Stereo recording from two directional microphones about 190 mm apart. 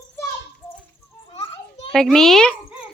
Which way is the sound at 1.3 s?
30° left (ahead or behind).